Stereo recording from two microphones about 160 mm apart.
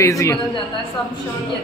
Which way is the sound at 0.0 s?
20° left (ahead or behind).